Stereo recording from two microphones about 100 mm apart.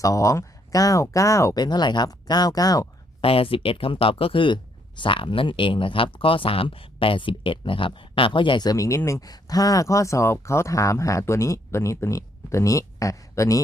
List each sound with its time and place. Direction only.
0.0 s speech: 35° left (ahead or behind)
1.5 s speech: 45° left (ahead or behind)
3.2 s speech: 65° left (ahead or behind); by 13.6 s 30° left (ahead or behind)